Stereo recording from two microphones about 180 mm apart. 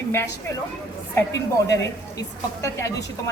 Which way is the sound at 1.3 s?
20° left (ahead or behind).